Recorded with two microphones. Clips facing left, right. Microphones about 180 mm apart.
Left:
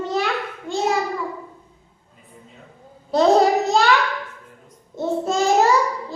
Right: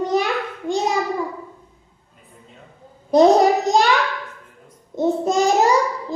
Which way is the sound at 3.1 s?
15° right (ahead or behind).